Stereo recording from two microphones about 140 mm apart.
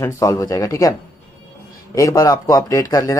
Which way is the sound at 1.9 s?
25° left (ahead or behind).